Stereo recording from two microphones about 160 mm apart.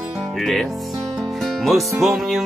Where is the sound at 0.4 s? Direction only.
Centre (ahead or behind).